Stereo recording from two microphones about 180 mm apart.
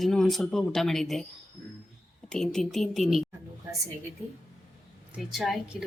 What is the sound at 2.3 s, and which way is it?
Speech, 5° left (ahead or behind).